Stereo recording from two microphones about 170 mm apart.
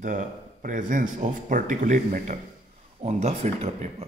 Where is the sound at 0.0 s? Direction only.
50° right (ahead or behind).